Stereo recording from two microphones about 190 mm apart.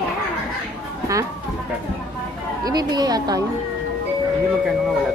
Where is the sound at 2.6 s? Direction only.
20° right (ahead or behind).